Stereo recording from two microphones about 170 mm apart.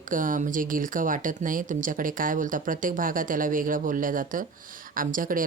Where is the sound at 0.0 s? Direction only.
50° right (ahead or behind).